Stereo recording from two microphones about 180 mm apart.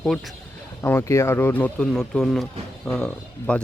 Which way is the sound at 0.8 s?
15° left (ahead or behind).